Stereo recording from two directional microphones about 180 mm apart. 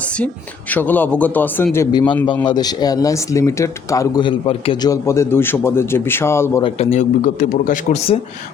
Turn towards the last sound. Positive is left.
turn(degrees=45)  # may be behind; listen again after turning